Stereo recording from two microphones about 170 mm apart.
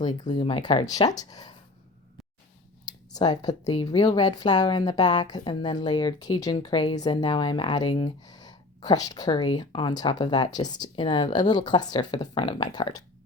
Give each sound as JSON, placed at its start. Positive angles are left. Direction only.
{"t": 0.0, "sound": "a woman's voice", "side_deg": 25}
{"t": 2.8, "sound": "a woman's voice", "side_deg": 25}